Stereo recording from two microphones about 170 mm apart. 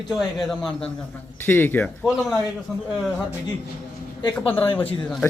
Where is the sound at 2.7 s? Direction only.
Centre (ahead or behind).